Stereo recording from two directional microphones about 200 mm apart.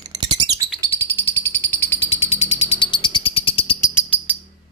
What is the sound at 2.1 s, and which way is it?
Bird, 30° left (ahead or behind).